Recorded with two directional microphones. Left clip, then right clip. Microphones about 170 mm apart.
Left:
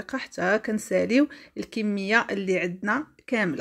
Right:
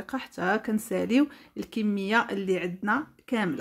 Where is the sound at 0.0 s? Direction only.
15° left (ahead or behind).